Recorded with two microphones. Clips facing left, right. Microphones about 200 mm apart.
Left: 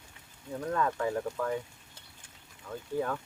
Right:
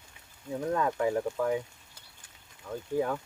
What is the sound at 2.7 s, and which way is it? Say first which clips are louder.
Speech: right 3 dB; 25° right (ahead or behind).